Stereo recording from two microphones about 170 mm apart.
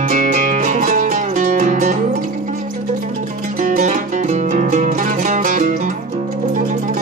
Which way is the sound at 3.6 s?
50° right (ahead or behind).